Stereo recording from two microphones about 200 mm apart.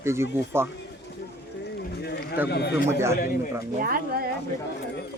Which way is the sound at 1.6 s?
55° left (ahead or behind).